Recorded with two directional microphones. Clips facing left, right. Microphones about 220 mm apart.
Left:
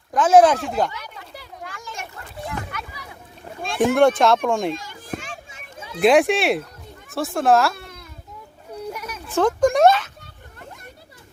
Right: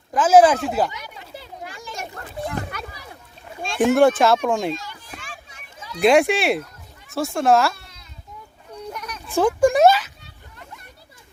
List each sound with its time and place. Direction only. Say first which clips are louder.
0.1 s speech: even; centre (ahead or behind)
0.9 s children playing: even; 15° right (ahead or behind)
2.0 s children playing: right 6 dB; 35° right (ahead or behind)
3.8 s speech: right 1 dB; centre (ahead or behind)
4.7 s children playing: left 2 dB; 50° left (ahead or behind)
5.5 s a sound: left 3 dB; 25° left (ahead or behind)
6.0 s speech: even; centre (ahead or behind)
7.8 s baby cry: left 9 dB; 55° left (ahead or behind)
8.9 s a sound: left 2 dB; 5° left (ahead or behind)
9.3 s speech: right 1 dB; 10° right (ahead or behind)